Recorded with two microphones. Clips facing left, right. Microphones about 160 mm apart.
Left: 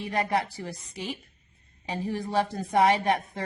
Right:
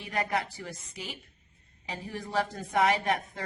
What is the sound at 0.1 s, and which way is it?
A woman's voice, 30° left (ahead or behind).